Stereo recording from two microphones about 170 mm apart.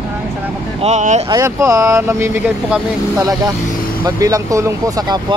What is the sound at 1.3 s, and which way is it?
Speech, 20° right (ahead or behind).